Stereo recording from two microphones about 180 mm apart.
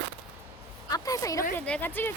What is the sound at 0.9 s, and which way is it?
A woman's voice, 20° left (ahead or behind).